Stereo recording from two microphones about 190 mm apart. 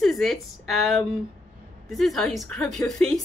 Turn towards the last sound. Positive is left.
turn(degrees=0)  # may be behind; listen again after turning